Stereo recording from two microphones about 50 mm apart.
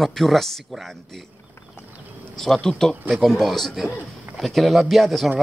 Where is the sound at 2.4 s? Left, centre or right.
Centre.